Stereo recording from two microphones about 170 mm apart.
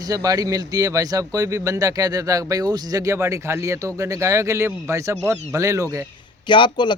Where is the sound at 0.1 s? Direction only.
20° right (ahead or behind).